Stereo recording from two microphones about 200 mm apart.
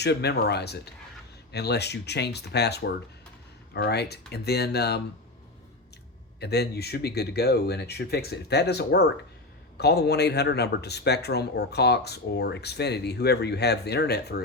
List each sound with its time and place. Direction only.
0.0 s speech: 55° left (ahead or behind)
6.4 s speech: 55° left (ahead or behind)